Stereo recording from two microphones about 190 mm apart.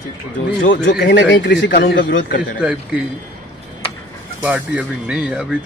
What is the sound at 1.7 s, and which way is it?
Speech, 50° left (ahead or behind).